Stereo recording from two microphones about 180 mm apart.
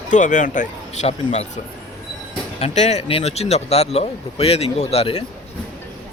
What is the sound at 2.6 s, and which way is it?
Speech, 35° left (ahead or behind).